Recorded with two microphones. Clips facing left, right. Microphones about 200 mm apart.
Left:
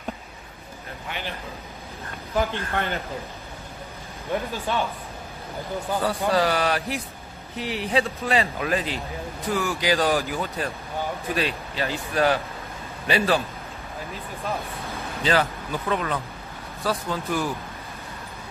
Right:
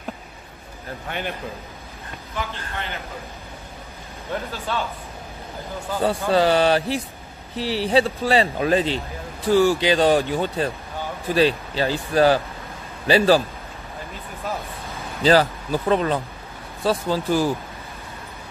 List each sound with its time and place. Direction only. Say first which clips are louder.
2.3 s speech: left 6 dB; 50° left (ahead or behind)
4.3 s speech: left 1 dB; 15° left (ahead or behind)
6.0 s speech: right 5 dB; 25° right (ahead or behind)
15.2 s speech: right 6 dB; 35° right (ahead or behind)